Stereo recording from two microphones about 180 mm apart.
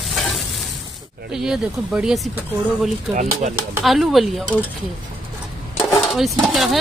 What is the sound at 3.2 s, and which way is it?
Speech, 40° right (ahead or behind).